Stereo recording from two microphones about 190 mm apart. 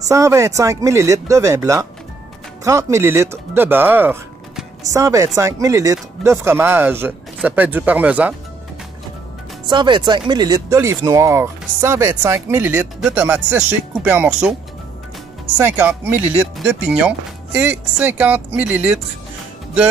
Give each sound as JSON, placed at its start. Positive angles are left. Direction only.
{"t": 0.1, "sound": "speech", "side_deg": -15}
{"t": 9.7, "sound": "speech", "side_deg": -25}
{"t": 15.5, "sound": "speech", "side_deg": -10}